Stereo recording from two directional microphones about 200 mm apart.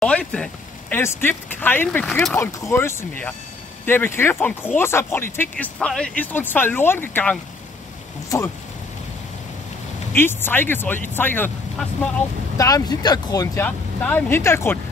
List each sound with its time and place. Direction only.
0.0 s speech: 5° left (ahead or behind)
10.1 s speech: 10° left (ahead or behind)
12.5 s speech: 15° left (ahead or behind)